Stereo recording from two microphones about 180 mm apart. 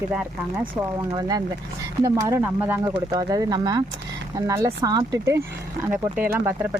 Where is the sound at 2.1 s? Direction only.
20° right (ahead or behind).